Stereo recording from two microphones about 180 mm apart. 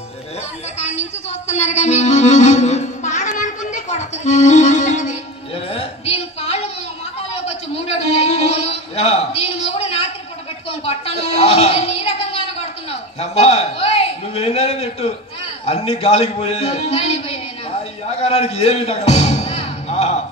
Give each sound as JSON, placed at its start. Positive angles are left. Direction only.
{"t": 0.7, "sound": "a woman's voice", "side_deg": 35}
{"t": 1.5, "sound": "music", "side_deg": 40}
{"t": 5.7, "sound": "a sound", "side_deg": 35}
{"t": 15.6, "sound": "a man's voice", "side_deg": 30}
{"t": 18.2, "sound": "music", "side_deg": 35}